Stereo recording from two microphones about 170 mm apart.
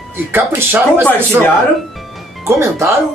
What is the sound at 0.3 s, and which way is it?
Speech, 15° right (ahead or behind).